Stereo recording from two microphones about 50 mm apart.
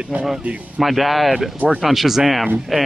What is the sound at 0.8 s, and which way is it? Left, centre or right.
Speech, centre.